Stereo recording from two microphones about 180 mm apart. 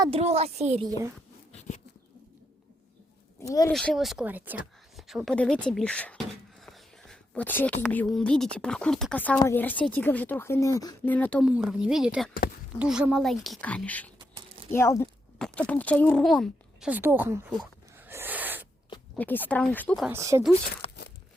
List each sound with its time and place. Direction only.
0.0 s a woman's voice: 35° right (ahead or behind)
0.9 s speech: 20° right (ahead or behind)
3.4 s speech: 20° left (ahead or behind)
3.7 s a woman's voice: centre (ahead or behind)
11.4 s a woman's voice: 5° right (ahead or behind); by 15.1 s 15° left (ahead or behind)
15.4 s speech: 5° left (ahead or behind)
16.9 s a woman's voice: 10° right (ahead or behind)
17.9 s a sound: 10° right (ahead or behind)
19.1 s speech: 10° left (ahead or behind)
20.1 s a woman's voice: 15° right (ahead or behind)
20.8 s tearing: 30° left (ahead or behind)